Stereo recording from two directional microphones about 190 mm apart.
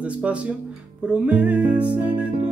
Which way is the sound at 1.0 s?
5° right (ahead or behind).